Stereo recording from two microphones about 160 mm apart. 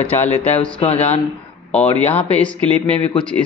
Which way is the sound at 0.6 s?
35° left (ahead or behind).